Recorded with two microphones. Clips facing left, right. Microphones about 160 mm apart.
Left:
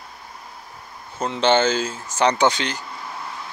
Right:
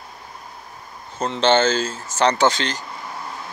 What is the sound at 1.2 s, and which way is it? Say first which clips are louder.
Speech: right 1 dB; 10° left (ahead or behind).